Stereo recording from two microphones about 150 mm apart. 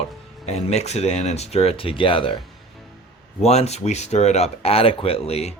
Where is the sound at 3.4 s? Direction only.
45° left (ahead or behind).